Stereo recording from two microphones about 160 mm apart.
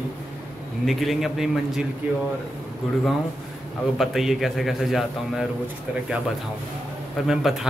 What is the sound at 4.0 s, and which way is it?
A man's voice, centre (ahead or behind).